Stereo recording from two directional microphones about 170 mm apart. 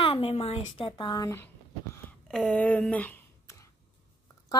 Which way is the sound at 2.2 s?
5° left (ahead or behind).